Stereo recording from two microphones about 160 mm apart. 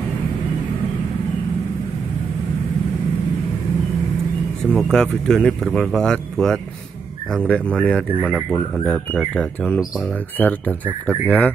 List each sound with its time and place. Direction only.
4.7 s speech: 5° left (ahead or behind)